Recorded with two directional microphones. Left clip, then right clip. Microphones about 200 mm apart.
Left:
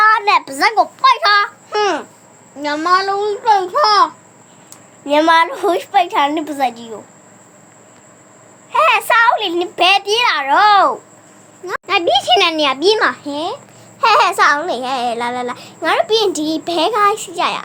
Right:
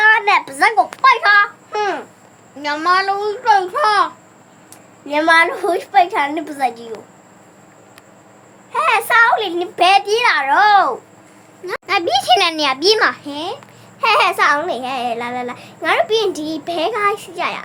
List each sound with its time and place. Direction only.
0.0 s a sound: 10° left (ahead or behind)
1.0 s a child's voice: 50° left (ahead or behind)
1.8 s babbling: 30° left (ahead or behind)
2.6 s a child's voice: 15° left (ahead or behind)
8.7 s a child's voice: 20° left (ahead or behind)